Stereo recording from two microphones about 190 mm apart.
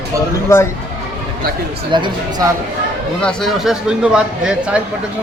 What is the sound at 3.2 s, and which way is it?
A man's voice, 5° left (ahead or behind).